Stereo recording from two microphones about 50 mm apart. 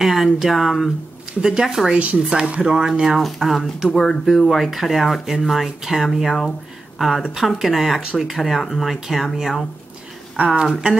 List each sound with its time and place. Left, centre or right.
0.0 s speech: centre
1.4 s speech: centre
1.9 s speech: right; by 3.9 s centre
3.9 s speech: centre
4.5 s speech: centre
10.3 s speech: right
10.6 s speech: centre